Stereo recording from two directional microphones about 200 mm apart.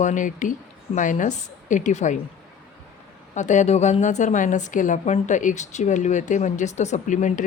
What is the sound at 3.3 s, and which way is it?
A woman's voice, 35° left (ahead or behind).